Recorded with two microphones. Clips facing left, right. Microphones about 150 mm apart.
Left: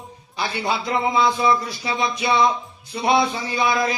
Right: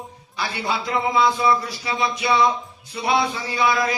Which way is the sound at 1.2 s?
20° left (ahead or behind).